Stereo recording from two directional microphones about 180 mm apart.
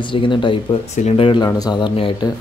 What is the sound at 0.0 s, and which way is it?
Speech, 30° left (ahead or behind).